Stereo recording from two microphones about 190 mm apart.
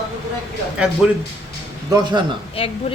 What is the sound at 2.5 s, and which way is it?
Speech, 30° left (ahead or behind).